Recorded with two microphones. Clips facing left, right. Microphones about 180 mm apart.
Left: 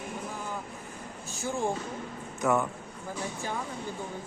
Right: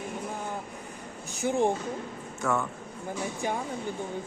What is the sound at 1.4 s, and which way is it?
Speech, 20° right (ahead or behind).